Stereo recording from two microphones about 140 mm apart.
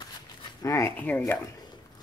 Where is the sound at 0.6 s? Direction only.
25° left (ahead or behind).